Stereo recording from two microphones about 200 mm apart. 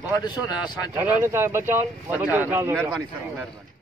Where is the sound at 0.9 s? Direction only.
10° right (ahead or behind).